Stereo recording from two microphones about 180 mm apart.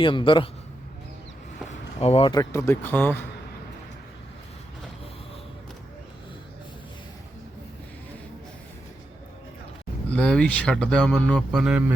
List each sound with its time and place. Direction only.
0.0 s a man's voice: 25° left (ahead or behind)
2.0 s speech: 35° left (ahead or behind)
2.3 s speech: 15° left (ahead or behind)
10.1 s speech: 5° left (ahead or behind)